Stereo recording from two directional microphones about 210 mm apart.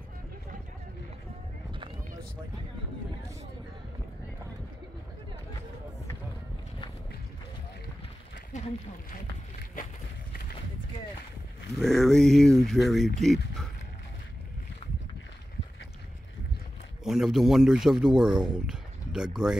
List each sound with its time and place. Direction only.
8.5 s speech: 35° left (ahead or behind)
11.7 s speech: centre (ahead or behind)
17.0 s a man's voice: centre (ahead or behind)